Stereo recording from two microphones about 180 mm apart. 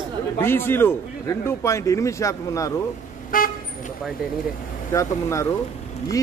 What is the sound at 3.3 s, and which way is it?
Vehicle, 50° left (ahead or behind).